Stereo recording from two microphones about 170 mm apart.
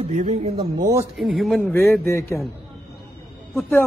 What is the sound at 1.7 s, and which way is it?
Speech, 15° left (ahead or behind).